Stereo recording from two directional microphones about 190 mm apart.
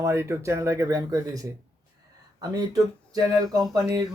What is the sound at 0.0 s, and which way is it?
Speech, 15° right (ahead or behind).